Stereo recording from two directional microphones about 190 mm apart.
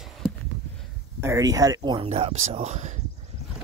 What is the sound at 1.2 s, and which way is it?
Speech, 15° right (ahead or behind).